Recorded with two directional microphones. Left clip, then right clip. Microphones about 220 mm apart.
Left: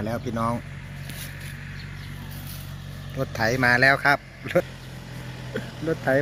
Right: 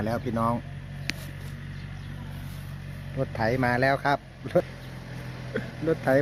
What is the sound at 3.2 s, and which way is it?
Speech, centre (ahead or behind).